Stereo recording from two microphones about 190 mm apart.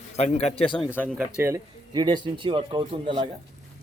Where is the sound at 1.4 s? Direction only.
20° right (ahead or behind).